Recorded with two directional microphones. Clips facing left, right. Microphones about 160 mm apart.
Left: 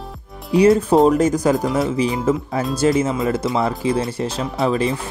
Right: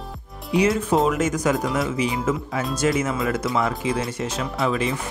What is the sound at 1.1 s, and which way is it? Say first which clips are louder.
Speech: left 6 dB; 35° left (ahead or behind).